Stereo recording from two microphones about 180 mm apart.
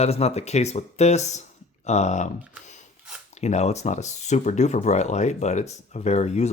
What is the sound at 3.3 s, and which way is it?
Speech, 40° left (ahead or behind).